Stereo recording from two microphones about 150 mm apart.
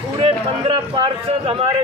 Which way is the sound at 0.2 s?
35° right (ahead or behind).